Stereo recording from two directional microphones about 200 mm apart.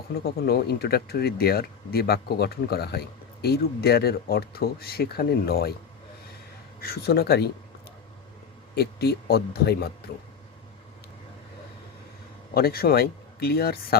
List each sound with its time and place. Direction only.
0.1 s speech: 50° left (ahead or behind)
6.8 s speech: 50° left (ahead or behind)
8.7 s speech: 55° left (ahead or behind)
12.5 s speech: 50° left (ahead or behind)